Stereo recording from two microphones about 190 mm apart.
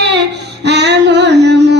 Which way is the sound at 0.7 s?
65° right (ahead or behind).